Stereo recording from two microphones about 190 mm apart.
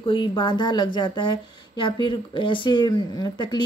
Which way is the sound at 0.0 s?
25° left (ahead or behind).